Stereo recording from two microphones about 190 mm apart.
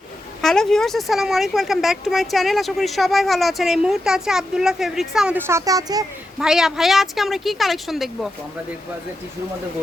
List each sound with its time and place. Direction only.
0.4 s speech: 5° left (ahead or behind); by 6.1 s 20° right (ahead or behind)
6.4 s speech: centre (ahead or behind)